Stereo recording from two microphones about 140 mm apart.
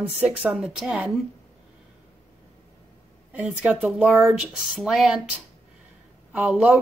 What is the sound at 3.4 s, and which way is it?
Speech, centre (ahead or behind).